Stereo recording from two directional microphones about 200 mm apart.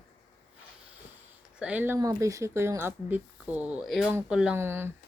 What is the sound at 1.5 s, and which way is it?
Speech, 5° right (ahead or behind).